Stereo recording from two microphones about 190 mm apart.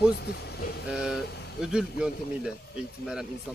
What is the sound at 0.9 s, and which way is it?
Vehicle, 5° right (ahead or behind).